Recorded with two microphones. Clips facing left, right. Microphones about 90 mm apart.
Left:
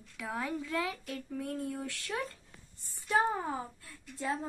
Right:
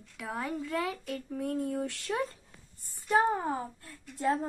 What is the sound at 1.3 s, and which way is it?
Speech, 20° right (ahead or behind).